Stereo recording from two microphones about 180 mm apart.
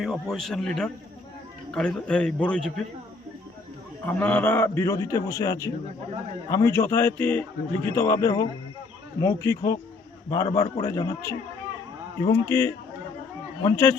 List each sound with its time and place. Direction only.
0.0 s a man's voice: centre (ahead or behind)
4.0 s a man's voice: 10° left (ahead or behind)
12.5 s a man's voice: 15° left (ahead or behind)